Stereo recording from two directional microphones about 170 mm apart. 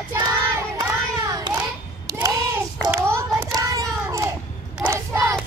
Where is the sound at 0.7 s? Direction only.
20° right (ahead or behind).